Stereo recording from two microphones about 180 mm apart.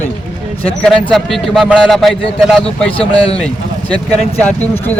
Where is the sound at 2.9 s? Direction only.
30° left (ahead or behind).